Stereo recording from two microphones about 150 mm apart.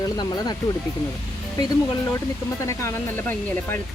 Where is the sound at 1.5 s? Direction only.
25° left (ahead or behind).